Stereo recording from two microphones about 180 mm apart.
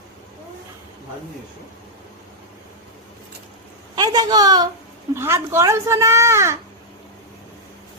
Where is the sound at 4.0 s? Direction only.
20° right (ahead or behind).